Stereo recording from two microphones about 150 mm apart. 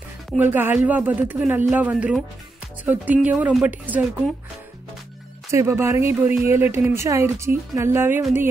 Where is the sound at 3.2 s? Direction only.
5° right (ahead or behind).